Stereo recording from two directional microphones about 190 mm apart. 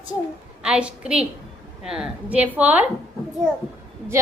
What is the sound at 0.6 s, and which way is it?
A woman's voice, 5° right (ahead or behind).